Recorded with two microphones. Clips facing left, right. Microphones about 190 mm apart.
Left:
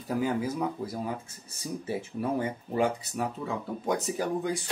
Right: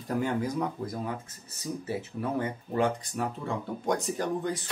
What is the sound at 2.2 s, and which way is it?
Speech, 10° left (ahead or behind).